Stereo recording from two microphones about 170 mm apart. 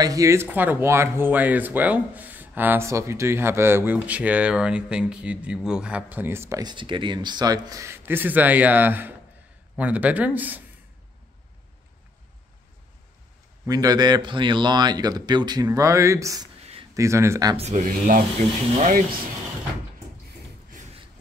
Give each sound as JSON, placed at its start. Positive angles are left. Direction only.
{"t": 0.0, "sound": "speech", "side_deg": -20}
{"t": 13.7, "sound": "speech", "side_deg": -20}
{"t": 17.6, "sound": "speech", "side_deg": -45}
{"t": 20.7, "sound": "beatboxing", "side_deg": -45}